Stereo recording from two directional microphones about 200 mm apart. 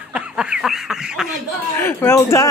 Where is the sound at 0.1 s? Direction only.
5° right (ahead or behind).